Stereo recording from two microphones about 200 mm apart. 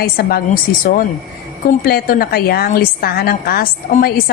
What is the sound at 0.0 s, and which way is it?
A woman's voice, 50° left (ahead or behind).